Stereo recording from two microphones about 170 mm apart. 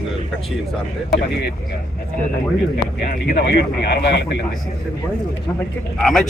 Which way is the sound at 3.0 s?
60° left (ahead or behind).